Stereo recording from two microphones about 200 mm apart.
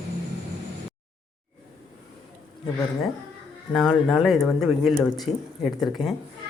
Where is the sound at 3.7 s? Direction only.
5° left (ahead or behind).